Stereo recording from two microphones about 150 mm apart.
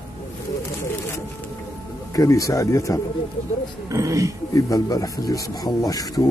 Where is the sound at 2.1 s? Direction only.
20° left (ahead or behind).